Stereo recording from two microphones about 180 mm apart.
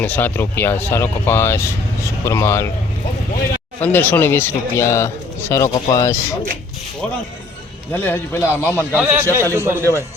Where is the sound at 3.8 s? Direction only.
10° left (ahead or behind).